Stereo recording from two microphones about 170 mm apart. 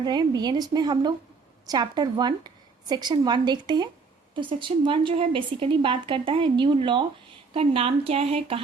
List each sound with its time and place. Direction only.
0.0 s a woman's voice: 25° right (ahead or behind)